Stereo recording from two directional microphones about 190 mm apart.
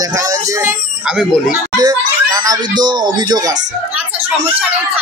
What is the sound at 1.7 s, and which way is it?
Speech, 20° right (ahead or behind).